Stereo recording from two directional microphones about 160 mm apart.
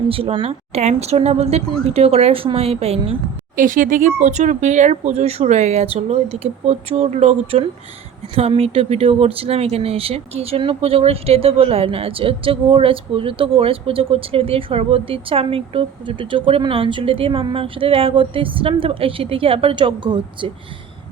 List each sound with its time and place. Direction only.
0.1 s speech: 35° right (ahead or behind)
3.5 s speech: 55° right (ahead or behind); by 20.5 s 30° right (ahead or behind)